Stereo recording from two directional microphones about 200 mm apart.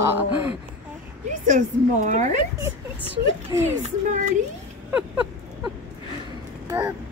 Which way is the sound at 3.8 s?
35° right (ahead or behind).